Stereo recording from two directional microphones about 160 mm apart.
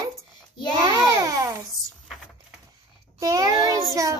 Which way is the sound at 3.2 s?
20° right (ahead or behind).